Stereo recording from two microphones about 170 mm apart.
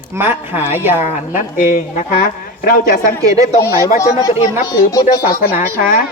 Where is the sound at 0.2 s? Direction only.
10° right (ahead or behind).